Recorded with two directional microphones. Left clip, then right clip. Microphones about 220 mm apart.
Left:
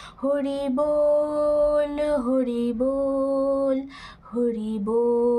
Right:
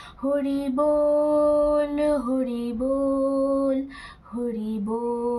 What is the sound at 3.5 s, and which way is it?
Speech, 50° left (ahead or behind).